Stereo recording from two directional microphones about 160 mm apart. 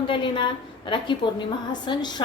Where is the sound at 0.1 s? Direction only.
30° left (ahead or behind).